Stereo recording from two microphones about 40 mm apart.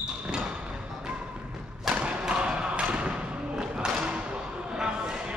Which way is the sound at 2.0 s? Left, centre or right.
Right.